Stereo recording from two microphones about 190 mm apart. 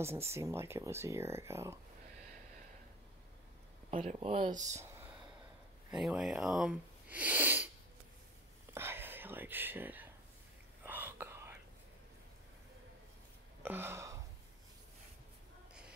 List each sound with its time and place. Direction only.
0.0 s speech: 15° right (ahead or behind)
3.9 s speech: 35° right (ahead or behind)
5.9 s speech: 5° right (ahead or behind)
8.7 s whispering: 10° right (ahead or behind)
13.6 s a sound: 10° right (ahead or behind)